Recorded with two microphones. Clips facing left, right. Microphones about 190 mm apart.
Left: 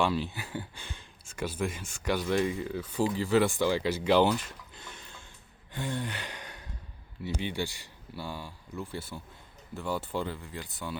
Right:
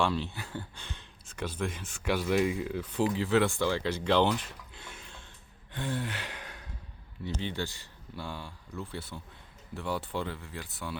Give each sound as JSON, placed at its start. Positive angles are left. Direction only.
{"t": 0.0, "sound": "speech", "side_deg": 5}
{"t": 5.7, "sound": "gasp", "side_deg": 0}
{"t": 7.3, "sound": "speech", "side_deg": 10}